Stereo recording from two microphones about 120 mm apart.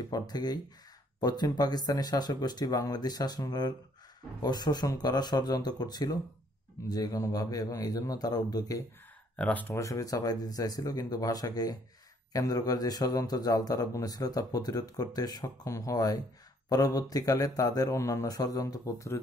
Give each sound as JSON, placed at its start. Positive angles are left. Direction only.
{"t": 0.1, "sound": "a man's voice", "side_deg": 35}
{"t": 9.4, "sound": "speech", "side_deg": 15}
{"t": 9.8, "sound": "a man's voice", "side_deg": 25}